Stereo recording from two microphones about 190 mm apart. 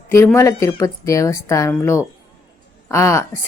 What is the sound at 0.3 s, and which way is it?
A woman's voice, 15° left (ahead or behind).